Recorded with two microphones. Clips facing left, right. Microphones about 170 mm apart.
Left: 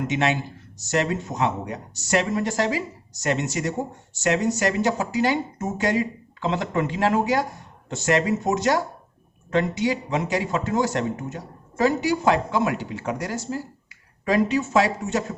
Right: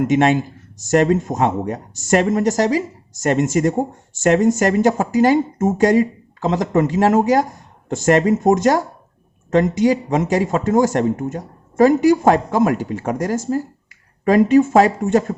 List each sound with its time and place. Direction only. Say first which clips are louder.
0.1 s speech: right 8 dB; 45° right (ahead or behind)